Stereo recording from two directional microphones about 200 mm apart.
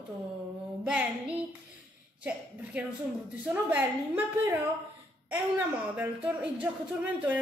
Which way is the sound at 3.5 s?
10° right (ahead or behind).